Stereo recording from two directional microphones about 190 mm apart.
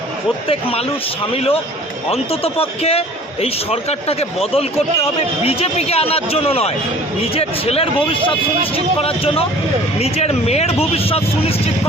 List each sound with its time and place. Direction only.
0.4 s speech: 30° left (ahead or behind)